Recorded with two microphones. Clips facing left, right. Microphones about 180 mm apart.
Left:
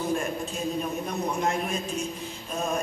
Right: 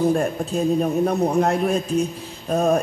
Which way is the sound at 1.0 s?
60° right (ahead or behind).